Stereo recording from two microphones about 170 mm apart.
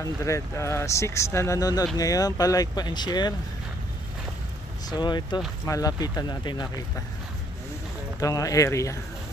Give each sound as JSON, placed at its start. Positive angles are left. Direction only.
{"t": 0.2, "sound": "speech", "side_deg": 15}
{"t": 4.8, "sound": "speech", "side_deg": 25}
{"t": 8.2, "sound": "speech", "side_deg": 20}